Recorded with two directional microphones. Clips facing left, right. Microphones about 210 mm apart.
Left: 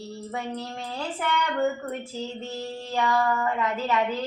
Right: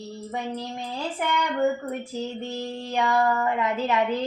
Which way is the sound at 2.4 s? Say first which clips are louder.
Right 2 dB; 15° right (ahead or behind).